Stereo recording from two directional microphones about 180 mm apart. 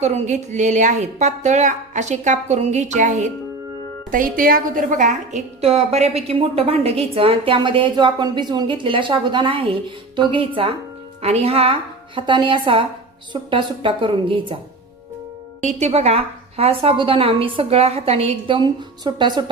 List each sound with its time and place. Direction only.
0.0 s a woman's voice: 40° right (ahead or behind)
15.6 s a woman's voice: 35° right (ahead or behind)